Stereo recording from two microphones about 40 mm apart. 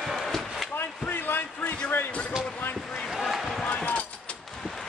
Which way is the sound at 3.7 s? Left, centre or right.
Left.